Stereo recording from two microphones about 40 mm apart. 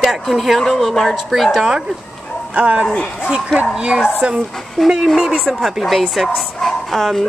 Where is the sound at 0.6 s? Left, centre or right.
Centre.